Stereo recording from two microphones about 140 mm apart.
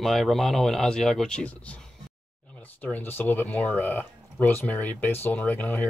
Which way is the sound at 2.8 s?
10° left (ahead or behind).